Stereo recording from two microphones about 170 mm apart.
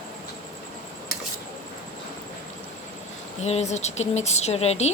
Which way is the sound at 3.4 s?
40° left (ahead or behind).